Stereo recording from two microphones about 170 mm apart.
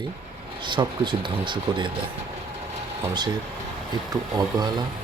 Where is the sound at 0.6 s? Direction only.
30° right (ahead or behind).